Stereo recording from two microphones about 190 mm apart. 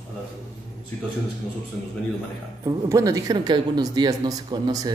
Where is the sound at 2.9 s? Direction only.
15° right (ahead or behind).